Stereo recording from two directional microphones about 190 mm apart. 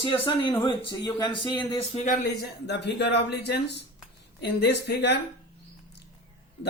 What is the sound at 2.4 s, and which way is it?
Speech, 60° left (ahead or behind).